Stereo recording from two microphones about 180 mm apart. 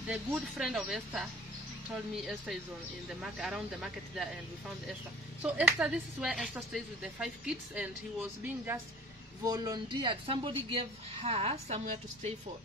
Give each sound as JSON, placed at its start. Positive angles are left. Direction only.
{"t": 0.1, "sound": "speech", "side_deg": -5}
{"t": 2.2, "sound": "speech", "side_deg": 0}
{"t": 5.4, "sound": "speech", "side_deg": -5}
{"t": 9.4, "sound": "speech", "side_deg": -20}